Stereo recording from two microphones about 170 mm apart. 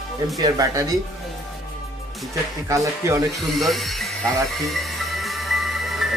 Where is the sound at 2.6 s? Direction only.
20° right (ahead or behind).